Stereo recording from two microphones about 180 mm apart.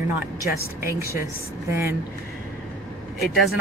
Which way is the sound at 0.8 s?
15° right (ahead or behind).